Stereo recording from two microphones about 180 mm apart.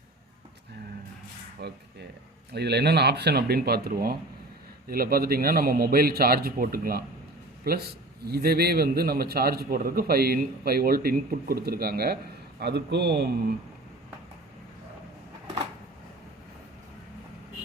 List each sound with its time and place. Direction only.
1.6 s a man's voice: 65° right (ahead or behind)